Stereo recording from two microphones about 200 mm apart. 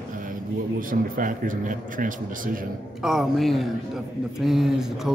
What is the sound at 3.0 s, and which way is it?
A man's voice, centre (ahead or behind).